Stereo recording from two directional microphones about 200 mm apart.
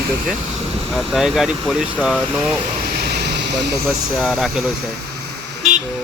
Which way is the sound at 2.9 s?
50° right (ahead or behind).